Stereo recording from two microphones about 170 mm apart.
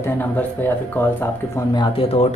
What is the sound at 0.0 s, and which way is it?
Speech, 10° left (ahead or behind).